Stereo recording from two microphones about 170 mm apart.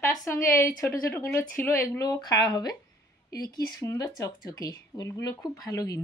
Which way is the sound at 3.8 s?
20° left (ahead or behind).